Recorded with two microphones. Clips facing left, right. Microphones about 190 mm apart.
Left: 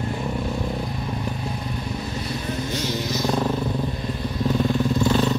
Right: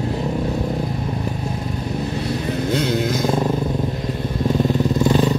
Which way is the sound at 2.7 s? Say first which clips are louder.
Right 9 dB; 55° right (ahead or behind).